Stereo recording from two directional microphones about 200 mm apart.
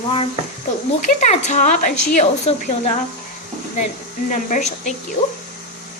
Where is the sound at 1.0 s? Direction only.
35° left (ahead or behind).